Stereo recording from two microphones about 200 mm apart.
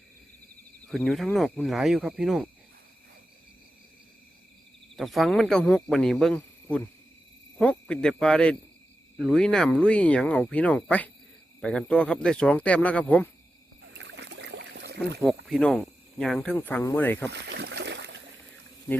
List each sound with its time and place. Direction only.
0.9 s speech: centre (ahead or behind)
4.9 s speech: centre (ahead or behind)
14.0 s boat: 60° right (ahead or behind)
15.4 s speech: centre (ahead or behind)
17.3 s a sound: 55° right (ahead or behind)